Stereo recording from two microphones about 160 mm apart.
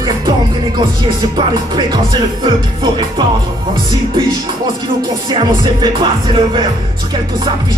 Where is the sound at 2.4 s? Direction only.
30° right (ahead or behind).